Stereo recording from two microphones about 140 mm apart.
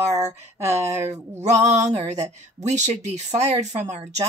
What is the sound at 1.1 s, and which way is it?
Speech, 55° right (ahead or behind).